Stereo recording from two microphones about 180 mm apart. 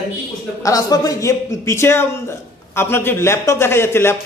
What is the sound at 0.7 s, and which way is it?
A man's voice, 20° left (ahead or behind).